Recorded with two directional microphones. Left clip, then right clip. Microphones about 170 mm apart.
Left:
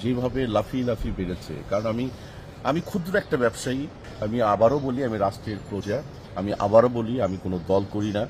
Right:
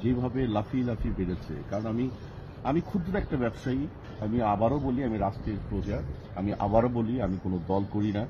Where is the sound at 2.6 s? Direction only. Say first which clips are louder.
Left 4 dB; 25° left (ahead or behind).